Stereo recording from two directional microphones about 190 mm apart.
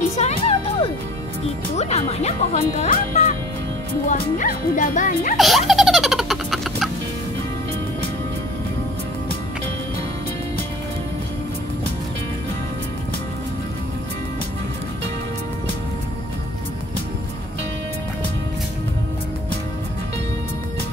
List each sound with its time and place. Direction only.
0.2 s music: 30° left (ahead or behind)
1.8 s speech: 35° left (ahead or behind)
5.4 s baby laughter: centre (ahead or behind)